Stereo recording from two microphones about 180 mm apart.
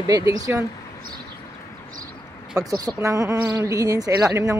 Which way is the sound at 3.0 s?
15° right (ahead or behind).